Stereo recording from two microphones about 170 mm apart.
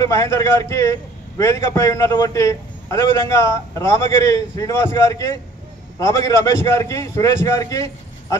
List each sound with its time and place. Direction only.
0.0 s a man's voice: 15° left (ahead or behind)